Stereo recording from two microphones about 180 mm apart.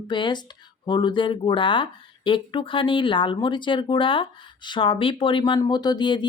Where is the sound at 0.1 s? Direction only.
25° left (ahead or behind).